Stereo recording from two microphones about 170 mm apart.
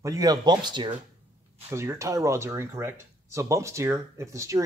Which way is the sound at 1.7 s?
15° right (ahead or behind).